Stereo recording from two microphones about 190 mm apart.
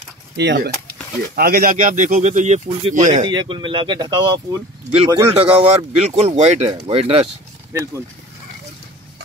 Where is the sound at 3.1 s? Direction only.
25° right (ahead or behind).